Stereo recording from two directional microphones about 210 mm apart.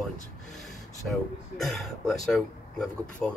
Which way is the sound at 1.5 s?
Centre (ahead or behind).